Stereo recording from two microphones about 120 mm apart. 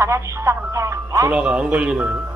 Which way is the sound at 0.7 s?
25° right (ahead or behind).